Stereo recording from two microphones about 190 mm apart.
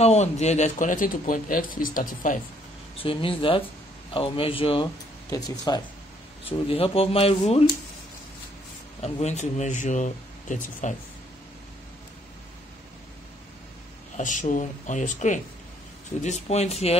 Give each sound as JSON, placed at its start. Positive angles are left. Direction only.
{"t": 0.0, "sound": "speech", "side_deg": 35}
{"t": 3.0, "sound": "a man's voice", "side_deg": 30}
{"t": 6.4, "sound": "speech", "side_deg": 30}
{"t": 9.0, "sound": "speech", "side_deg": 35}
{"t": 14.1, "sound": "speech", "side_deg": 40}